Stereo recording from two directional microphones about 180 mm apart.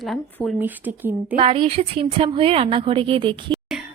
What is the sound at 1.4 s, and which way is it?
A woman's voice, 30° right (ahead or behind).